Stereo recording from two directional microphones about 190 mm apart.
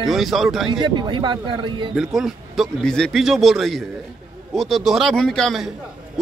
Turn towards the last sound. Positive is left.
turn(degrees=0)  # may be behind; listen again after turning